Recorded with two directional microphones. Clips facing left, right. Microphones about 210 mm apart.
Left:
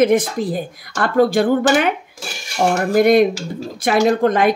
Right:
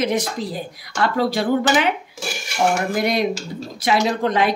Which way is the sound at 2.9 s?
50° left (ahead or behind).